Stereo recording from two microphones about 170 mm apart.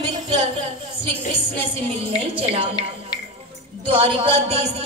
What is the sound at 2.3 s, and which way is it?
Speech, 35° right (ahead or behind).